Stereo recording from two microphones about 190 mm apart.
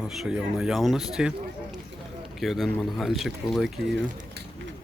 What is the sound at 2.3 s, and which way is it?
Speech, centre (ahead or behind).